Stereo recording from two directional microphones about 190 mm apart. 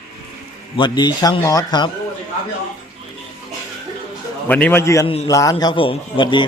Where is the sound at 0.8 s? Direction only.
20° left (ahead or behind).